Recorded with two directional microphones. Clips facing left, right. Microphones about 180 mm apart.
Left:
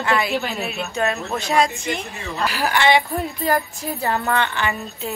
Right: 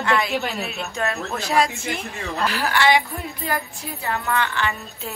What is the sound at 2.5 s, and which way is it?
Speech, 15° left (ahead or behind).